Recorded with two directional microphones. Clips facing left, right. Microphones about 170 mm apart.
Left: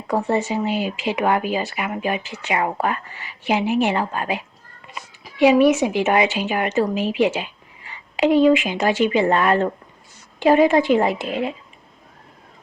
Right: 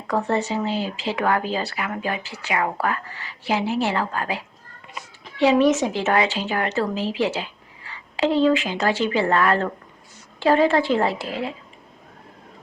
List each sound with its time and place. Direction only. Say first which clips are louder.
0.1 s a woman's voice: left 2 dB; 15° left (ahead or behind)